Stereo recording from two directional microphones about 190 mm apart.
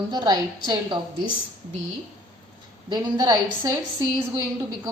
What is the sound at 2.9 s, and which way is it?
A woman's voice, 20° right (ahead or behind).